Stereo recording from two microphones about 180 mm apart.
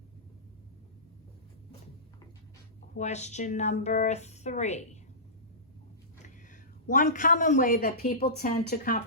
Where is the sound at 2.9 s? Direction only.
40° left (ahead or behind).